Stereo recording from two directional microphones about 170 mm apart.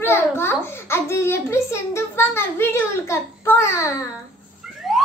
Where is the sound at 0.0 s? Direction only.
15° left (ahead or behind).